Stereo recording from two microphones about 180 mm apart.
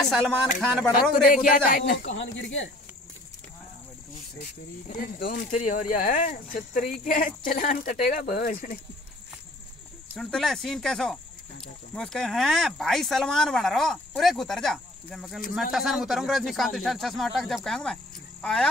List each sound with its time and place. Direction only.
0.1 s speech: 5° left (ahead or behind)
1.7 s speech: 55° left (ahead or behind)
2.3 s speech: 90° left
4.8 s speech: 45° left (ahead or behind)
10.1 s speech: 5° left (ahead or behind)